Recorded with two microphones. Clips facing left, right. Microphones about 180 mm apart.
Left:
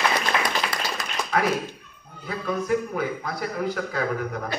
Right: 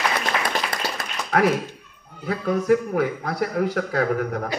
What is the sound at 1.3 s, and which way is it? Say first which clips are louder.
A man's voice: right 4 dB; 60° right (ahead or behind).